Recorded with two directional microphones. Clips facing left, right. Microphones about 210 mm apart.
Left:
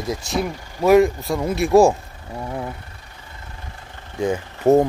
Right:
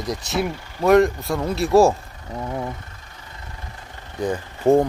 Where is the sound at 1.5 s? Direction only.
15° left (ahead or behind).